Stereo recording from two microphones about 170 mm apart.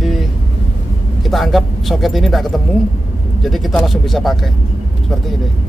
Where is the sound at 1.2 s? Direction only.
Centre (ahead or behind).